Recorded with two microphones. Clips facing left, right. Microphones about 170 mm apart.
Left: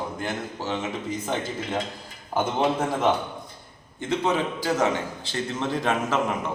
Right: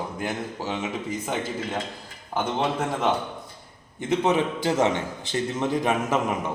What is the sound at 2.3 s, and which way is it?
Speech, 5° left (ahead or behind).